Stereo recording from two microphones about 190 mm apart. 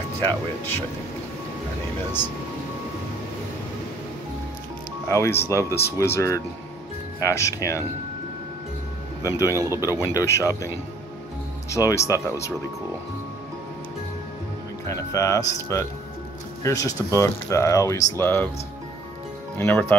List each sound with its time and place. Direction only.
5.0 s speech: 15° left (ahead or behind)
9.2 s speech: 15° left (ahead or behind)
11.7 s speech: 15° left (ahead or behind)
14.9 s speech: 15° left (ahead or behind)
19.6 s speech: 10° left (ahead or behind)